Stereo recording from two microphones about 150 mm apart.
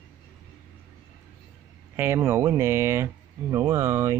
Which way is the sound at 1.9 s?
15° right (ahead or behind).